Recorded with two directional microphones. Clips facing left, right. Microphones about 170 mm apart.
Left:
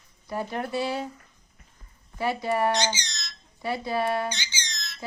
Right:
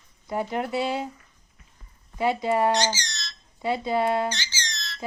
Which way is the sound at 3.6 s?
20° right (ahead or behind).